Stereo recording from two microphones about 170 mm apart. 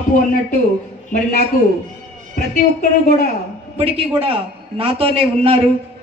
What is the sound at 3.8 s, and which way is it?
A man's voice, 35° right (ahead or behind).